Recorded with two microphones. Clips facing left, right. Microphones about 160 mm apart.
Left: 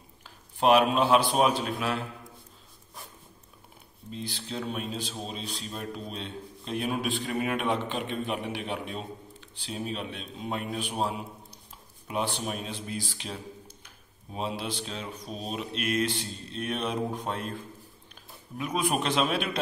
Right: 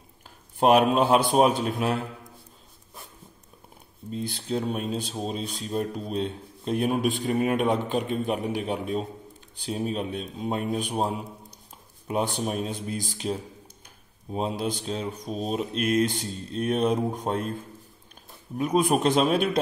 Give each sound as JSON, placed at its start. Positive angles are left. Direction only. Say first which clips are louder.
{"t": 0.6, "sound": "a man's voice", "louder": "right 3 dB", "side_deg": -45}
{"t": 4.1, "sound": "a man's voice", "louder": "right 7 dB", "side_deg": -45}
{"t": 12.1, "sound": "a man's voice", "louder": "right 4 dB", "side_deg": -40}
{"t": 18.6, "sound": "a man's voice", "louder": "right 6 dB", "side_deg": -40}